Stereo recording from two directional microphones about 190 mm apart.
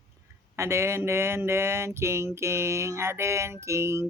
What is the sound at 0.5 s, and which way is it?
Mantra, 15° right (ahead or behind).